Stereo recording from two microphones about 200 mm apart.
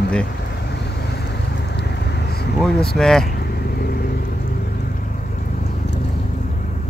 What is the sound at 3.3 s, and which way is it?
Vehicle, 50° left (ahead or behind).